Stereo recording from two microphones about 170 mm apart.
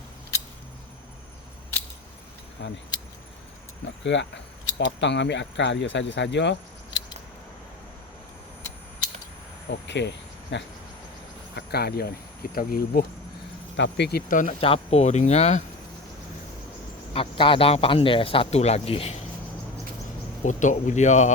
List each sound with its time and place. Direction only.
4.0 s speech: 90° left
9.6 s speech: 90° left
11.5 s speech: 70° left (ahead or behind)
13.7 s speech: 85° left; by 14.5 s 50° left (ahead or behind)
14.6 s speech: 35° left (ahead or behind)
17.2 s speech: 30° left (ahead or behind)
20.4 s speech: 45° left (ahead or behind)